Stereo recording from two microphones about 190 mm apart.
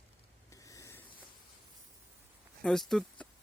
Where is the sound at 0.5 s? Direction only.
15° left (ahead or behind).